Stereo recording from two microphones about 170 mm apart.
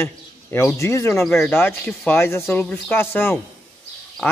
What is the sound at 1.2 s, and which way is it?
Speech, centre (ahead or behind).